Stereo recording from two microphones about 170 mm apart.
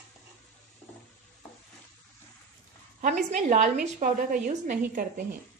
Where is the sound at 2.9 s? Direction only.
45° right (ahead or behind).